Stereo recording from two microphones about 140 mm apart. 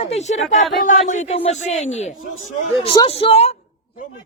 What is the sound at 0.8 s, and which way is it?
Speech, 65° left (ahead or behind).